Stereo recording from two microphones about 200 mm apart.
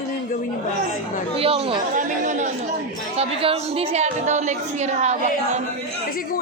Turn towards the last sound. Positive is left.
turn(degrees=-35)  # may be behind; listen again after turning